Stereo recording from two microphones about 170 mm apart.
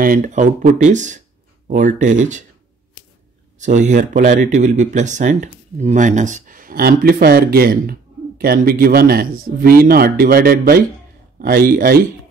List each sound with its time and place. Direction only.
0.0 s speech: 55° right (ahead or behind)
3.5 s speech: 45° right (ahead or behind); by 12.1 s 60° right (ahead or behind)